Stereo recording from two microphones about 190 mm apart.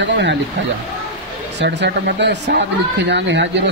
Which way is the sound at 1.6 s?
65° right (ahead or behind).